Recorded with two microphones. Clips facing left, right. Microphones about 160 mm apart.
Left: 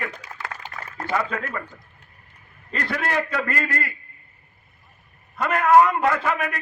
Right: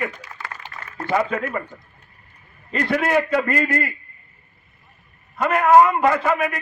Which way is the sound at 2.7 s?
20° right (ahead or behind).